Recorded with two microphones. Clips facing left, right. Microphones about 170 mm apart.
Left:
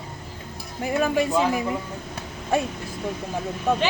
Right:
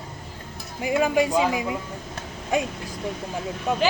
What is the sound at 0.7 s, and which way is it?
Speech, 15° right (ahead or behind).